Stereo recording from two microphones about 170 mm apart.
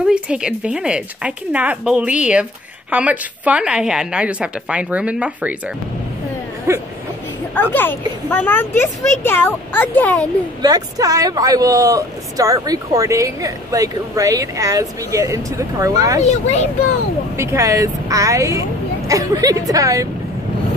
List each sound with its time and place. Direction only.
0.0 s speech: 5° right (ahead or behind)
6.7 s speech: 15° right (ahead or behind)
7.7 s speech: 10° left (ahead or behind)
10.6 s speech: 20° right (ahead or behind)
16.2 s a child's voice: 40° left (ahead or behind)
17.4 s speech: 15° right (ahead or behind)